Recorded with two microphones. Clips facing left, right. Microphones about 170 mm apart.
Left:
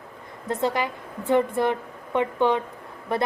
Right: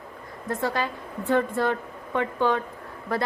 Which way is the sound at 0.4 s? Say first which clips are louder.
Left 2 dB; 20° left (ahead or behind).